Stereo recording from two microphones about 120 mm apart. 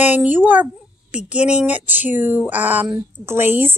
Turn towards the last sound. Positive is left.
turn(degrees=-20)  # may be behind; listen again after turning